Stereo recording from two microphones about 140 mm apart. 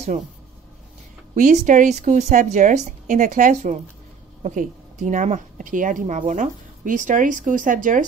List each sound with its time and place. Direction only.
1.3 s a woman's voice: 60° right (ahead or behind)